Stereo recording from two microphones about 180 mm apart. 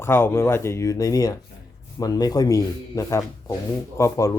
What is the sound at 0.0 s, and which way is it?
A man's voice, 15° left (ahead or behind).